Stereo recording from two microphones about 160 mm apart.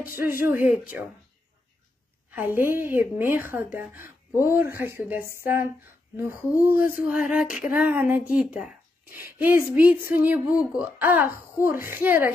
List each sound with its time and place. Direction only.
0.1 s speech: 15° right (ahead or behind)
2.3 s a woman's voice: 10° right (ahead or behind)
3.3 s speech: 65° left (ahead or behind)
4.4 s speech: 15° right (ahead or behind)